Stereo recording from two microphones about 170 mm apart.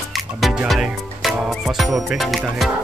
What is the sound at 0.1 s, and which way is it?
Music, centre (ahead or behind).